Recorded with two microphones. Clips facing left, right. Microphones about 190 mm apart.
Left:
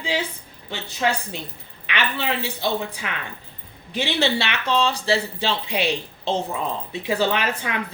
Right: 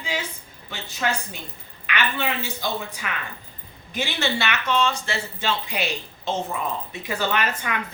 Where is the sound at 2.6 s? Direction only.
30° left (ahead or behind).